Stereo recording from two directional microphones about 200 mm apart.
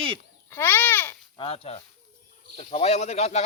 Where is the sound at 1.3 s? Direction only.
30° left (ahead or behind).